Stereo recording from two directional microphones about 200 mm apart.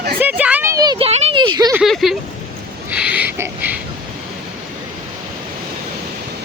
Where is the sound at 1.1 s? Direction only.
30° right (ahead or behind).